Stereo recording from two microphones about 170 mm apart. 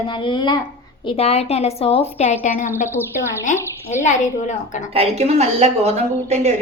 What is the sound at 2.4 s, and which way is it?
Speech, 50° left (ahead or behind).